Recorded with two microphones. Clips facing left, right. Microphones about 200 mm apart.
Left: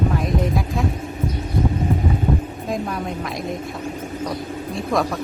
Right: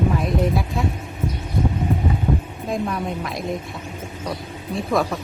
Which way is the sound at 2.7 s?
Centre (ahead or behind).